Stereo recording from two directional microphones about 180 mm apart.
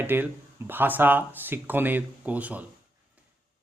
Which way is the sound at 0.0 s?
10° right (ahead or behind).